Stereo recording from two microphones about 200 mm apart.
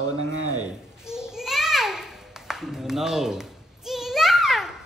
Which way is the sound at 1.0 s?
5° right (ahead or behind).